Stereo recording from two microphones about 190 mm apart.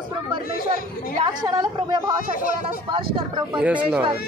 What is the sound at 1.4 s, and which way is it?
A woman's voice, 20° right (ahead or behind).